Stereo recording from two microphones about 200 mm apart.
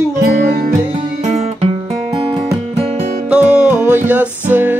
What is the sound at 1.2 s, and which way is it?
Music, 35° right (ahead or behind).